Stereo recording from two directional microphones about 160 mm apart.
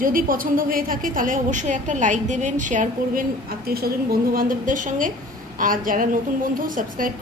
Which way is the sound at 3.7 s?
70° right (ahead or behind).